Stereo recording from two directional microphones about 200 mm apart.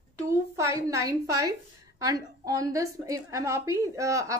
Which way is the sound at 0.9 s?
15° right (ahead or behind).